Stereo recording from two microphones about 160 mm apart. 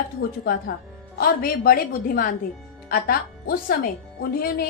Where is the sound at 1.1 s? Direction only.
70° left (ahead or behind).